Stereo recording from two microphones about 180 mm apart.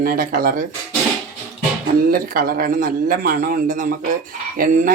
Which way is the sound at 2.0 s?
55° right (ahead or behind).